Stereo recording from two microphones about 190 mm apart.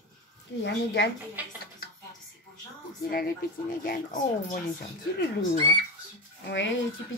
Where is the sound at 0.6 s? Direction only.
65° left (ahead or behind).